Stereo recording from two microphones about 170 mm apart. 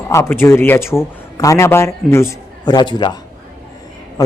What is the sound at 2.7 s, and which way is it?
Speech, 25° left (ahead or behind).